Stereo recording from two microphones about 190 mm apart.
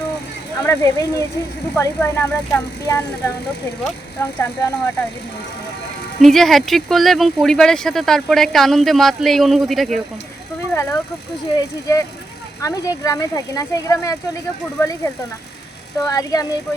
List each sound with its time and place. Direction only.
0.6 s speech: 15° left (ahead or behind)
6.1 s speech: centre (ahead or behind)
10.8 s speech: 15° left (ahead or behind)